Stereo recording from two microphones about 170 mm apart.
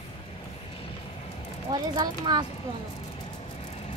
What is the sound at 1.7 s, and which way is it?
Speech, 25° right (ahead or behind).